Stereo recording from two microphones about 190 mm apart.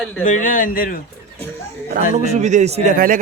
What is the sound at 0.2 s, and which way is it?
Speech, 40° left (ahead or behind).